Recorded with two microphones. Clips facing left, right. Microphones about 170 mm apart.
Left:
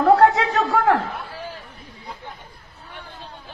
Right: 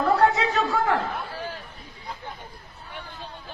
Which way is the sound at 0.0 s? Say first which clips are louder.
Left 5 dB; 55° left (ahead or behind).